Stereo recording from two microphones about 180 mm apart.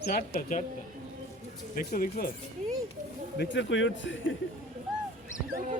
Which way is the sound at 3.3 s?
75° left (ahead or behind).